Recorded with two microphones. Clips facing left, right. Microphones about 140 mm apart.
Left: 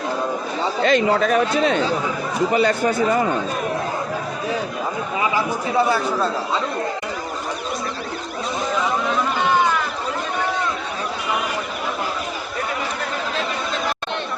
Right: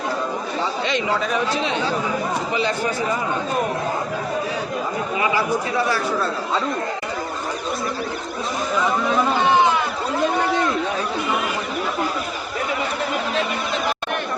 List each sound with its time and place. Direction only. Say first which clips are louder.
0.8 s a man's voice: left 8 dB; 45° left (ahead or behind)